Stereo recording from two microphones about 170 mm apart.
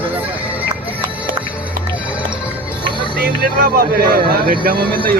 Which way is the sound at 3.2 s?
60° right (ahead or behind).